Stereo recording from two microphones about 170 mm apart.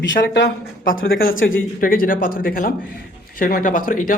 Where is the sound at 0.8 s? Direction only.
55° left (ahead or behind).